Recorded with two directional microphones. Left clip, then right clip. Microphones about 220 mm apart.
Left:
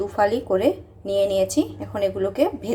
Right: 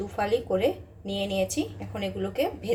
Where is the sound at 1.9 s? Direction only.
20° left (ahead or behind).